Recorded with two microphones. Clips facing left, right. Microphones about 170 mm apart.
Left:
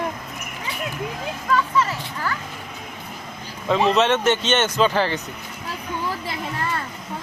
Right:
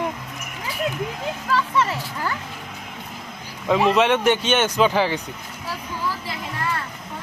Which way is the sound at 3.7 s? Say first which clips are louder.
Right 1 dB; 10° right (ahead or behind).